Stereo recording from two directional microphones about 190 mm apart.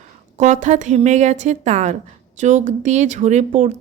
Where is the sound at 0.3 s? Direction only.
40° right (ahead or behind).